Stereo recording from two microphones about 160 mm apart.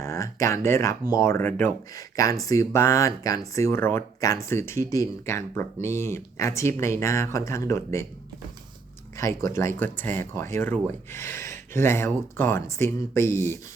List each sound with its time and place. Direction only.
0.0 s speech: 20° left (ahead or behind)
9.1 s speech: 20° left (ahead or behind)